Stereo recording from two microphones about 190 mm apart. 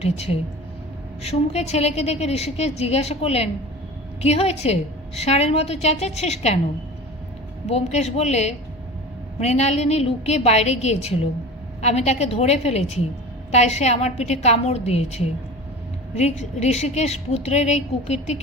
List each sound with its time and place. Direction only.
0.0 s a woman's voice: 30° left (ahead or behind)
7.7 s a woman's voice: 35° left (ahead or behind)